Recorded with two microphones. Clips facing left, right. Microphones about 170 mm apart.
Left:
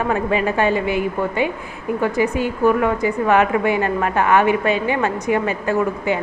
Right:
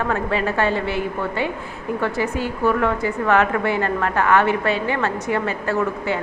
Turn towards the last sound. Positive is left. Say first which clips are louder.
# left 3 dB
turn(degrees=15)  # may be behind; listen again after turning